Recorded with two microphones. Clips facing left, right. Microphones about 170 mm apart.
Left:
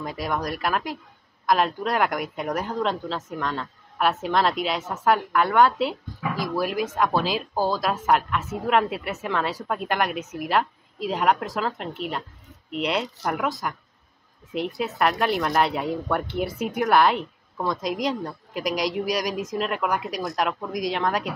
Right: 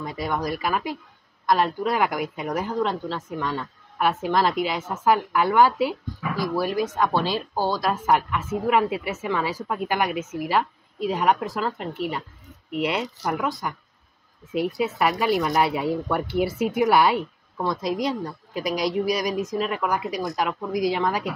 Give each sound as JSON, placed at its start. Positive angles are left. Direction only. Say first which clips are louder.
{"t": 0.0, "sound": "a woman's voice", "louder": "right 1 dB", "side_deg": 0}